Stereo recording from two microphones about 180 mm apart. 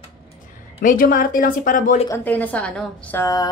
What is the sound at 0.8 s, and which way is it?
Speech, 50° left (ahead or behind).